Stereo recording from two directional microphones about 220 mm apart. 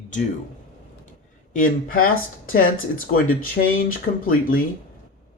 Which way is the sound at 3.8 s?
40° left (ahead or behind).